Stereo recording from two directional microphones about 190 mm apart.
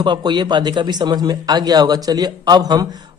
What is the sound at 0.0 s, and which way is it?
A man's voice, 25° right (ahead or behind).